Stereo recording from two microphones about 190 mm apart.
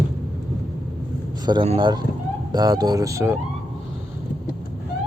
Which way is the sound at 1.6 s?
30° right (ahead or behind).